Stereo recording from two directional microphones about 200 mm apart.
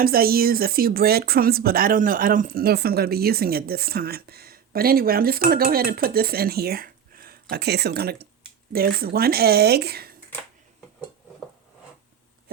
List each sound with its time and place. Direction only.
0.0 s speech: 50° right (ahead or behind)